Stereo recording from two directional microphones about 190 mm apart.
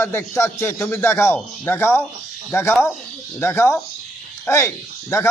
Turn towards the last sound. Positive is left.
turn(degrees=15)  # may be behind; listen again after turning